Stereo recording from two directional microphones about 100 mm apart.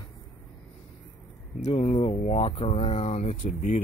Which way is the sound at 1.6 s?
90° left.